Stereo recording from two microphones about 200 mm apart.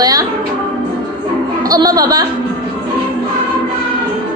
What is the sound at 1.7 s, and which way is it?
Speech, 20° right (ahead or behind).